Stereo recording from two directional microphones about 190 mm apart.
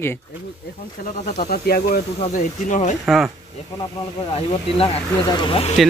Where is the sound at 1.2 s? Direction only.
40° left (ahead or behind).